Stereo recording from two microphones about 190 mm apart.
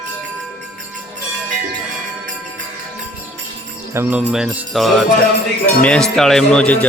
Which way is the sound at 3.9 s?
10° right (ahead or behind).